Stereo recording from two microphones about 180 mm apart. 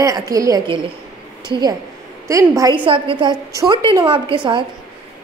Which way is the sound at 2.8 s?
30° right (ahead or behind).